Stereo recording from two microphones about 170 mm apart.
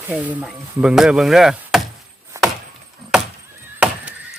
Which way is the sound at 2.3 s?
15° right (ahead or behind).